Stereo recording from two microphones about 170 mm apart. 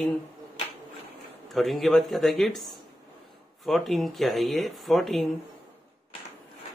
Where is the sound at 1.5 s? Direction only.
Centre (ahead or behind).